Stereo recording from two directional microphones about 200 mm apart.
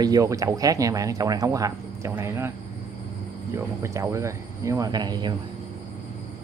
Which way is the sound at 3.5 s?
15° right (ahead or behind).